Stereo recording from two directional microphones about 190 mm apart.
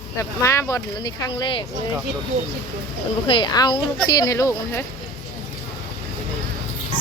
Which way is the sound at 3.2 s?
25° left (ahead or behind).